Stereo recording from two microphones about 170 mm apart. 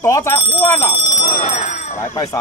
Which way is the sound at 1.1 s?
45° left (ahead or behind).